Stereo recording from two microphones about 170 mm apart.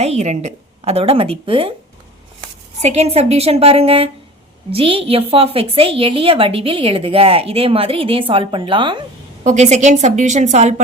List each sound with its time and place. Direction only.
0.0 s a woman's voice: 40° right (ahead or behind)
2.8 s a woman's voice: 40° right (ahead or behind)
9.4 s a woman's voice: 40° right (ahead or behind)